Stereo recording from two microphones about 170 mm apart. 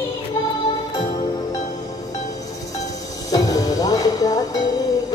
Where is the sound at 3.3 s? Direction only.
20° left (ahead or behind).